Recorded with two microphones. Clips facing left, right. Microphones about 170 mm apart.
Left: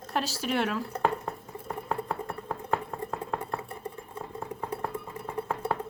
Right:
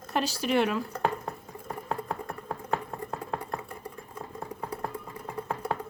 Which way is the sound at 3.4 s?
25° left (ahead or behind).